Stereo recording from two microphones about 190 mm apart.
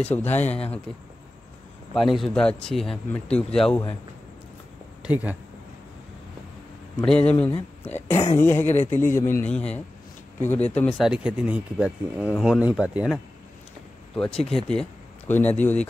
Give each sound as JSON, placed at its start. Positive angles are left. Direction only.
{"t": 0.0, "sound": "a man's voice", "side_deg": 10}
{"t": 0.4, "sound": "speech", "side_deg": 35}
{"t": 2.0, "sound": "speech", "side_deg": 0}
{"t": 5.0, "sound": "speech", "side_deg": -10}
{"t": 7.1, "sound": "a man's voice", "side_deg": 5}
{"t": 10.7, "sound": "speech", "side_deg": 5}